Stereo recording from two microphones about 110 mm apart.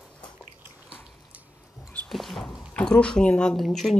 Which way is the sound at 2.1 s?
Centre (ahead or behind).